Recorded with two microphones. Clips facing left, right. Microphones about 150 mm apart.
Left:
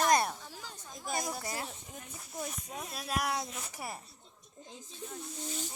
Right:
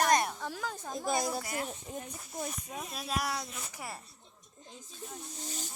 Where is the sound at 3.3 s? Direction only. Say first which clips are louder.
Left 2 dB; 25° left (ahead or behind).